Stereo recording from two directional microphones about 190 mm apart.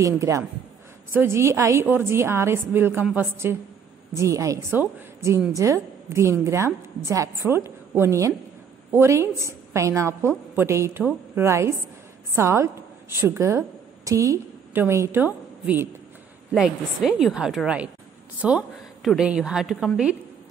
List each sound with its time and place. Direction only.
0.0 s a woman's voice: 15° right (ahead or behind)